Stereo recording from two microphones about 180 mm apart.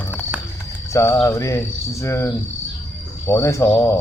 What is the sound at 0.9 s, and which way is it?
Mantra, 15° left (ahead or behind).